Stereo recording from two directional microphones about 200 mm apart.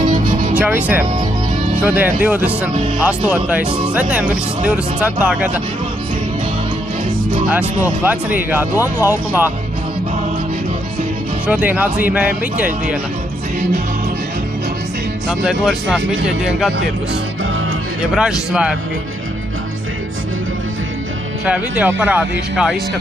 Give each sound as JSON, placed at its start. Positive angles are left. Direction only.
{"t": 0.3, "sound": "music", "side_deg": -40}
{"t": 0.6, "sound": "speech", "side_deg": -5}
{"t": 7.4, "sound": "speech", "side_deg": -10}
{"t": 11.4, "sound": "speech", "side_deg": -5}
{"t": 15.2, "sound": "speech", "side_deg": 0}
{"t": 18.1, "sound": "speech", "side_deg": 0}
{"t": 21.5, "sound": "speech", "side_deg": -5}